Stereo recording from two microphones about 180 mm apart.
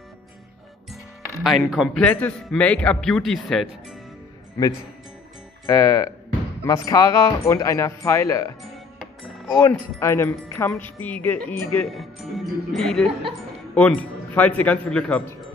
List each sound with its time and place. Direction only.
1.4 s speech: centre (ahead or behind)
5.7 s speech: 15° left (ahead or behind)
9.2 s music: centre (ahead or behind)
9.6 s a man's voice: 15° left (ahead or behind)